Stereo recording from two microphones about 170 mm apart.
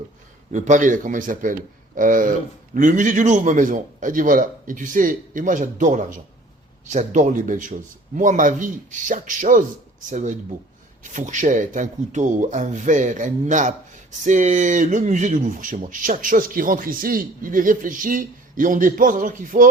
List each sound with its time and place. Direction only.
0.5 s speech: 45° right (ahead or behind)